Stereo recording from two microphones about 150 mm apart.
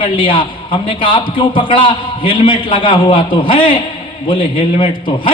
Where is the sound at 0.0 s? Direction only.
35° left (ahead or behind).